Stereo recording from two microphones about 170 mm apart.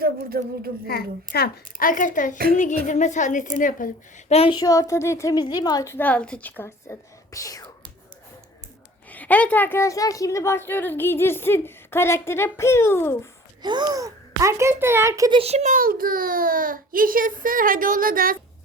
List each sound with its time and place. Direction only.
0.0 s a child's voice: 65° right (ahead or behind)
0.9 s a child's voice: 65° left (ahead or behind)
4.3 s child singing: 35° left (ahead or behind)
4.6 s a woman's voice: 20° left (ahead or behind)
9.0 s a woman's voice: 10° left (ahead or behind)
13.6 s speech: 25° right (ahead or behind)
15.4 s a child's voice: 40° right (ahead or behind); by 18.3 s 55° right (ahead or behind)